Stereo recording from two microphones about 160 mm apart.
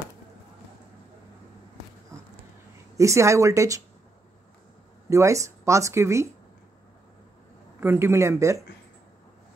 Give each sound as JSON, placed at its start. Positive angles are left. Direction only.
{"t": 3.0, "sound": "speech", "side_deg": -20}
{"t": 5.1, "sound": "speech", "side_deg": -20}
{"t": 7.8, "sound": "a man's voice", "side_deg": -15}